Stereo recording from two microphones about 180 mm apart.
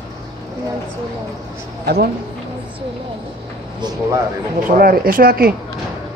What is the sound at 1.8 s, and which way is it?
Speech, 60° right (ahead or behind).